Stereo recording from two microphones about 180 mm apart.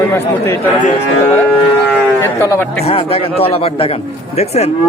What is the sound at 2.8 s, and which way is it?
Cattle, 35° left (ahead or behind).